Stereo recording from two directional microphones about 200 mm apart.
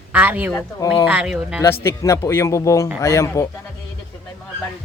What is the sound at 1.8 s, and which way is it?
Speech, 15° left (ahead or behind).